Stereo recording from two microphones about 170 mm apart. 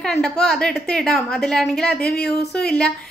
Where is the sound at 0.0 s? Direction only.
5° left (ahead or behind).